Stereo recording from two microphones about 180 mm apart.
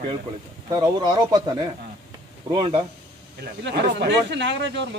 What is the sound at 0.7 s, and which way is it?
Speech, 25° right (ahead or behind).